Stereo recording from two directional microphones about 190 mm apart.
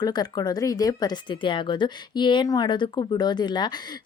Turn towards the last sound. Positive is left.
turn(degrees=20)  # may be behind; listen again after turning